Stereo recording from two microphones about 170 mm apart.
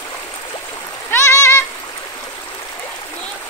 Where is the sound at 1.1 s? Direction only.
15° left (ahead or behind).